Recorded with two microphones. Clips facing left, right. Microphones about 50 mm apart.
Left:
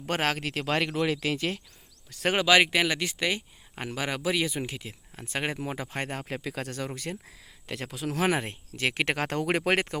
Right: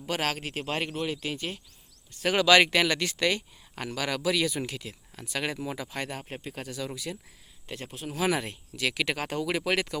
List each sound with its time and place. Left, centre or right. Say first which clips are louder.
0.0 s speech: left 2 dB; left
2.3 s speech: right 1 dB; left
6.2 s speech: left 4 dB; left
7.7 s speech: left 4 dB; left
8.2 s speech: even; left
9.1 s speech: left 2 dB; left